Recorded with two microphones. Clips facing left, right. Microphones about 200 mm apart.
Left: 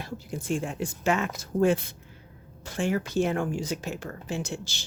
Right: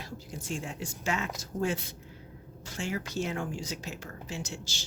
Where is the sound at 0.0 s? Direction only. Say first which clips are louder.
Left 6 dB; 55° left (ahead or behind).